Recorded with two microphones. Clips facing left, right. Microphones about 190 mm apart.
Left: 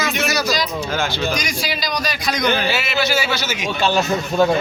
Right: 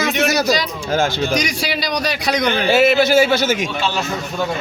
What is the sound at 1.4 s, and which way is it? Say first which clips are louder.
A man's voice: right 3 dB; 70° right (ahead or behind).